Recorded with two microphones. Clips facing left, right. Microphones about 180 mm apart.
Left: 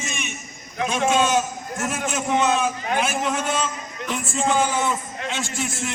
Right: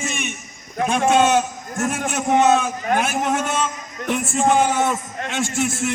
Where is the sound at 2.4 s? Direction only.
45° right (ahead or behind).